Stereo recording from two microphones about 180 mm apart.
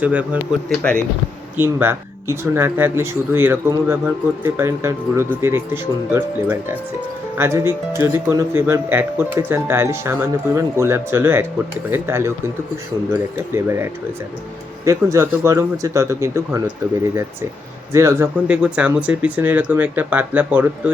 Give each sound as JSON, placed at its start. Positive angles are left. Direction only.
{"t": 0.0, "sound": "speech", "side_deg": -10}
{"t": 1.5, "sound": "speech", "side_deg": -15}
{"t": 17.9, "sound": "speech", "side_deg": -15}